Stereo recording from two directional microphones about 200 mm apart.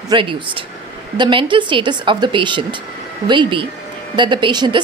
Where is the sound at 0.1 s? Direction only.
25° right (ahead or behind).